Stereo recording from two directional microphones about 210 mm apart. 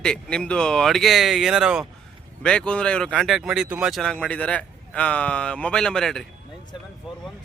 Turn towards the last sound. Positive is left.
turn(degrees=5)  # may be behind; listen again after turning